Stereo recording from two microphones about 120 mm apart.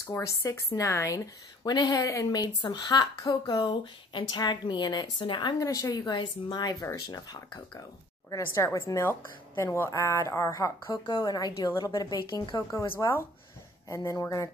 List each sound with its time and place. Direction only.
0.0 s speech: 20° left (ahead or behind); by 5.6 s 45° left (ahead or behind)
5.6 s speech: 30° left (ahead or behind)
8.4 s a woman's voice: 20° left (ahead or behind); by 12.9 s 40° left (ahead or behind)
12.9 s a woman's voice: 20° left (ahead or behind)